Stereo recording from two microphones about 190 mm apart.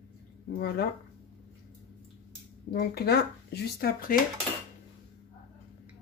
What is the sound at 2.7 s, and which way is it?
Speech, 55° left (ahead or behind).